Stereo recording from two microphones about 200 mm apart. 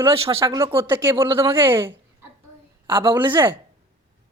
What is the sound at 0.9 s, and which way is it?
Speech, 25° right (ahead or behind).